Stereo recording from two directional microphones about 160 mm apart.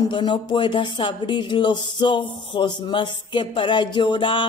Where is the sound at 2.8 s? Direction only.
30° left (ahead or behind).